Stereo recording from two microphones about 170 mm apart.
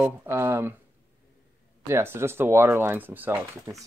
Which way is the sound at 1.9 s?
15° right (ahead or behind).